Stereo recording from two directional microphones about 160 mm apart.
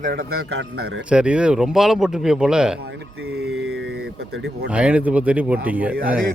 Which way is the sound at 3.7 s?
90° right.